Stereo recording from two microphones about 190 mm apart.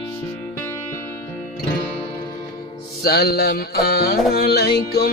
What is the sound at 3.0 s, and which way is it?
Music, 55° left (ahead or behind).